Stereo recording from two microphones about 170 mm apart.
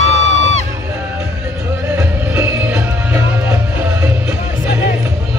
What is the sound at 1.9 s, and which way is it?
Music, 10° right (ahead or behind).